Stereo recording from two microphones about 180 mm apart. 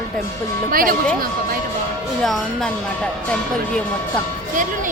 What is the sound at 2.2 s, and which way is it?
Speech, centre (ahead or behind).